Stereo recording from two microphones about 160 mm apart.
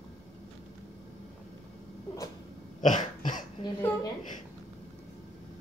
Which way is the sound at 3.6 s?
40° left (ahead or behind).